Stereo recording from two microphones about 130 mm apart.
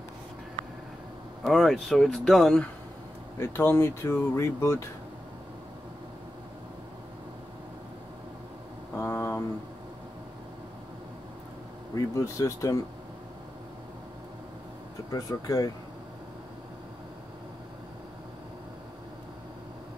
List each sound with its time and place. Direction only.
1.4 s speech: centre (ahead or behind)
3.3 s speech: 20° left (ahead or behind)
8.9 s a sound: 20° left (ahead or behind)
11.9 s speech: 25° left (ahead or behind)
15.0 s speech: 25° left (ahead or behind)